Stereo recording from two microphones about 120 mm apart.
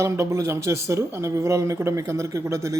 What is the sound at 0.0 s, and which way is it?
A man's voice, 25° right (ahead or behind).